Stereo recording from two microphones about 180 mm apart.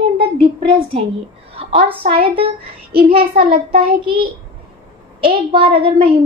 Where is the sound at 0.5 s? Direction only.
30° right (ahead or behind).